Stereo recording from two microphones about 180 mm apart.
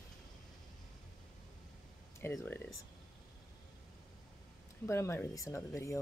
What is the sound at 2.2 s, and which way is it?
Speech, 10° left (ahead or behind).